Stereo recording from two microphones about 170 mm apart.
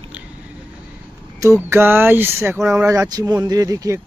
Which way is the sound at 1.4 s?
15° right (ahead or behind).